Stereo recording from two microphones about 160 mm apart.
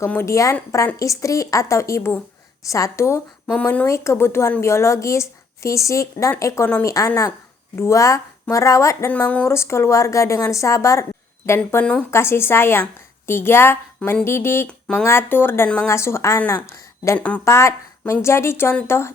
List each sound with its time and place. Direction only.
0.0 s a woman's voice: 15° left (ahead or behind)